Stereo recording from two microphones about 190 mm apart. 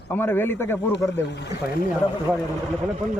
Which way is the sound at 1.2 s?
65° left (ahead or behind).